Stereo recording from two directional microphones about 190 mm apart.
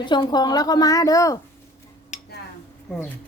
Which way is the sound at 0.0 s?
25° left (ahead or behind).